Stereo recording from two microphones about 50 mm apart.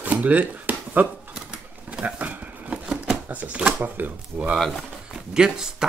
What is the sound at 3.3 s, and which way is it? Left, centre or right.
Speech, right.